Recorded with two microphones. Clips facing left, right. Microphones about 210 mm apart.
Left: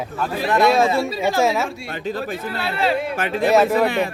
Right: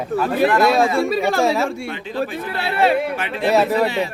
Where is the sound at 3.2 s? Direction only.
45° left (ahead or behind).